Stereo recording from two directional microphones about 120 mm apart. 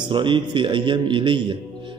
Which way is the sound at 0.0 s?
45° right (ahead or behind).